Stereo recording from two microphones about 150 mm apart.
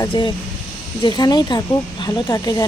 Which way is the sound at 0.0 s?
30° left (ahead or behind).